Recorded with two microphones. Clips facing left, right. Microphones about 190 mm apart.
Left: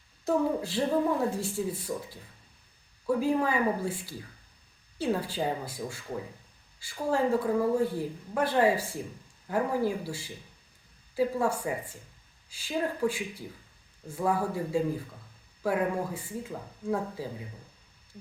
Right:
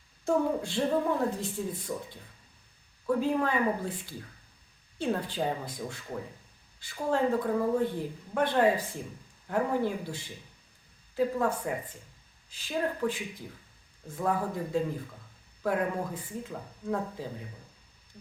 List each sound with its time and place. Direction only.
0.3 s a woman's voice: 5° left (ahead or behind)